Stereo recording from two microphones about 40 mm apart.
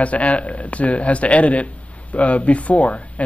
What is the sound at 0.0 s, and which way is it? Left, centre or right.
Speech, left.